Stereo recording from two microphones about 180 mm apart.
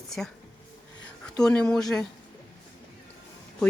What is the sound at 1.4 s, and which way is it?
Speech, 5° left (ahead or behind).